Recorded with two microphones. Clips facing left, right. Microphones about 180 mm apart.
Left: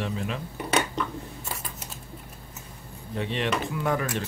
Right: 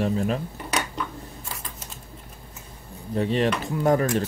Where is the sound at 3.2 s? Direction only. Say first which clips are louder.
Right 5 dB; 40° right (ahead or behind).